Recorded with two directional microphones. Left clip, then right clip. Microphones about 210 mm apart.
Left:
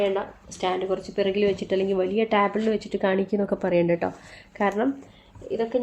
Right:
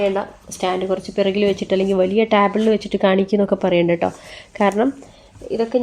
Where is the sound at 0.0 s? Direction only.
45° right (ahead or behind).